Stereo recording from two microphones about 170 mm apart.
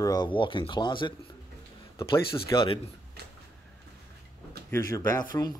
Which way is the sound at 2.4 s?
30° left (ahead or behind).